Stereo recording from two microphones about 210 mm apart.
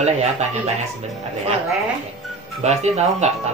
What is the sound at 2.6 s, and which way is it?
Speech, 30° right (ahead or behind).